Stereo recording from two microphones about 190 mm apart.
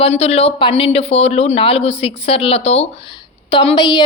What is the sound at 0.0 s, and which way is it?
A woman's voice, 35° left (ahead or behind).